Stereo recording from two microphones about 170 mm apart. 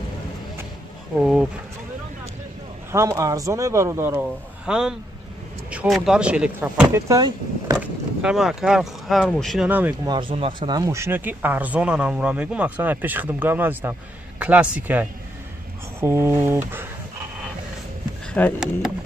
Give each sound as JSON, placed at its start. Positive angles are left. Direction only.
{"t": 1.2, "sound": "speech", "side_deg": -5}
{"t": 2.9, "sound": "speech", "side_deg": -15}
{"t": 4.6, "sound": "a man's voice", "side_deg": -5}
{"t": 7.8, "sound": "speech", "side_deg": -5}
{"t": 9.7, "sound": "speech", "side_deg": -10}
{"t": 10.0, "sound": "speech", "side_deg": -30}
{"t": 18.4, "sound": "speech", "side_deg": 10}